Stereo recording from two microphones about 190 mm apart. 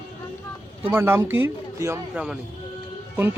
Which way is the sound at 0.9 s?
10° right (ahead or behind).